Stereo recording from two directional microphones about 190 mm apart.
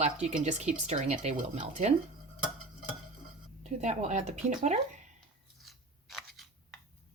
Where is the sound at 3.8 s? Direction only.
40° right (ahead or behind).